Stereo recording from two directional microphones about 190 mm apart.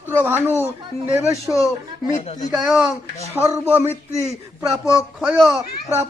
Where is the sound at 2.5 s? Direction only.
Centre (ahead or behind).